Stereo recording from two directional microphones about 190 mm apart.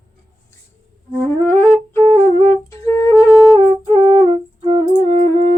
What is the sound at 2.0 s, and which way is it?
Flute, 30° right (ahead or behind).